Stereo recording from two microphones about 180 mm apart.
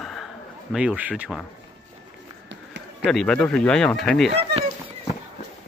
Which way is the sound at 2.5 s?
75° right (ahead or behind).